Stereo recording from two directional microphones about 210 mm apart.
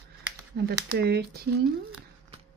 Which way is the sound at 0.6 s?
50° right (ahead or behind).